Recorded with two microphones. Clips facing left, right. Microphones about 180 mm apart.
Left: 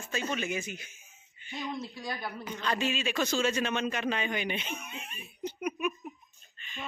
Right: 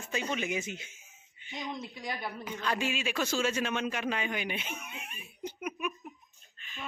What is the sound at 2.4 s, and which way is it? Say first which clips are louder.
A man's voice: left 1 dB; 10° right (ahead or behind).